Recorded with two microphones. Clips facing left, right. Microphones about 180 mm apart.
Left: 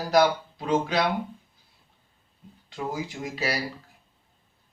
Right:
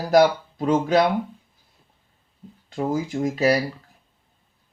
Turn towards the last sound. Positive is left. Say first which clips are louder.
# right 10 dB
turn(degrees=-45)  # may be behind; listen again after turning